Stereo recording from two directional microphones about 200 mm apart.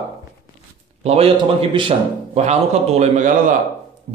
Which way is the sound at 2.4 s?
35° right (ahead or behind).